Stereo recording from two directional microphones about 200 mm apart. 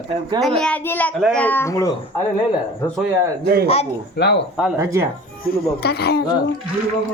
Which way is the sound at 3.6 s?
30° left (ahead or behind).